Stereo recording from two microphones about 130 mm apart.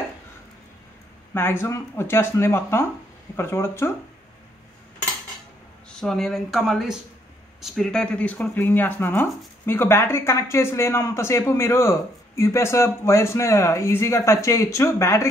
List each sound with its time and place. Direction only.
1.3 s speech: 20° left (ahead or behind)
5.9 s speech: 5° left (ahead or behind); by 15.2 s 20° left (ahead or behind)